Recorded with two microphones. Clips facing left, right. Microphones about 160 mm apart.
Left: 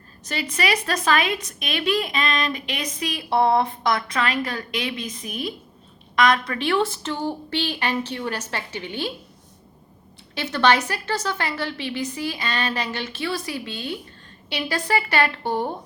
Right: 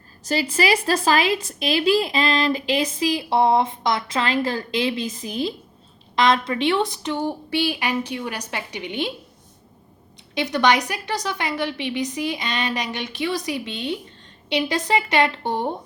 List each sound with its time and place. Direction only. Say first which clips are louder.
0.3 s a woman's voice: right 4 dB; 30° right (ahead or behind)
10.3 s a woman's voice: right 1 dB; 15° right (ahead or behind)